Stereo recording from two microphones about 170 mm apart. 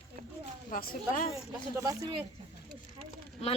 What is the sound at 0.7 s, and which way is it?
Speech, 55° left (ahead or behind).